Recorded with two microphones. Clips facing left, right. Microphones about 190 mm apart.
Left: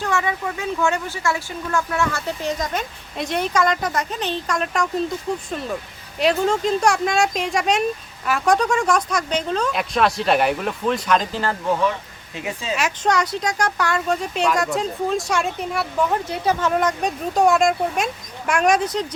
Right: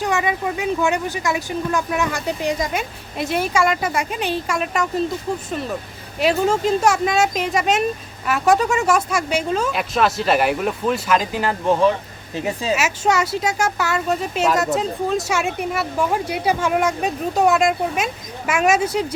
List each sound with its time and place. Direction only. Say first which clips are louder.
0.0 s speech: right 2 dB; 15° right (ahead or behind)
11.6 s speech: right 4 dB; 25° right (ahead or behind)
12.3 s speech: right 5 dB; 35° right (ahead or behind)
12.7 s speech: even; 5° right (ahead or behind)